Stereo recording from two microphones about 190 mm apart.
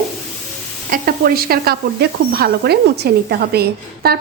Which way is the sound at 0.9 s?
50° right (ahead or behind).